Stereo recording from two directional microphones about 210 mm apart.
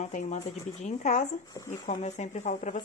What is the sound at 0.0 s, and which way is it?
A woman's voice, 35° left (ahead or behind).